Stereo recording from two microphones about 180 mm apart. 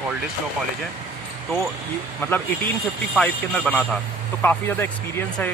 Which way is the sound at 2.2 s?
10° left (ahead or behind).